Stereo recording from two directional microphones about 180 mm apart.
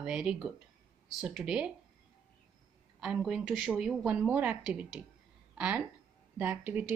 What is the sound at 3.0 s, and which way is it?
A woman's voice, 5° right (ahead or behind).